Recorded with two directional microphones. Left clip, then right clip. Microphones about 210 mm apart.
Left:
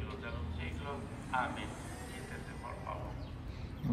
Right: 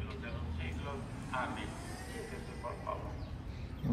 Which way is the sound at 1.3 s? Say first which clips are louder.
Left 2 dB; 15° left (ahead or behind).